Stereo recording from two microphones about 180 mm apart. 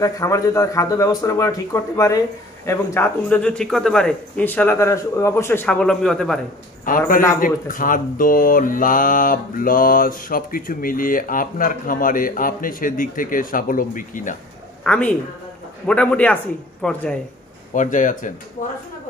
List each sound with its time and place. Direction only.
0.0 s a man's voice: 20° left (ahead or behind); by 6.4 s 5° left (ahead or behind)
6.9 s speech: 50° left (ahead or behind)
14.8 s a woman's voice: 5° left (ahead or behind)
17.7 s speech: 45° left (ahead or behind)